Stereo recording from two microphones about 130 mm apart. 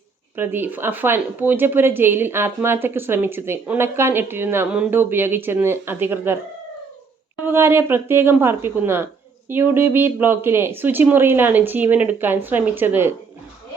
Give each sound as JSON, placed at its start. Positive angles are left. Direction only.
{"t": 0.3, "sound": "speech", "side_deg": -15}
{"t": 7.4, "sound": "speech", "side_deg": -20}